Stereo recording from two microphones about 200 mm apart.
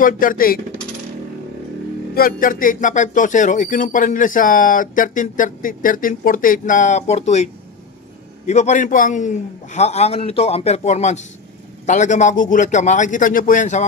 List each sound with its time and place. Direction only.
0.0 s speech: 45° left (ahead or behind)
2.1 s speech: 45° left (ahead or behind)
8.5 s speech: 35° left (ahead or behind)